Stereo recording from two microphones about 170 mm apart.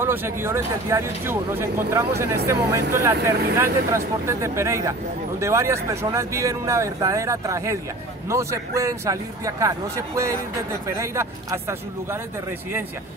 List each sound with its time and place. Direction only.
0.0 s speech: 15° right (ahead or behind)